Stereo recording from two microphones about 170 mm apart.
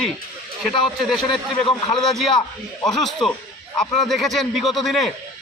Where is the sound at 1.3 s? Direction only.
30° left (ahead or behind).